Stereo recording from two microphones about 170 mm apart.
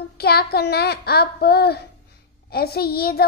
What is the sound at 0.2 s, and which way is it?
Speech, 70° left (ahead or behind).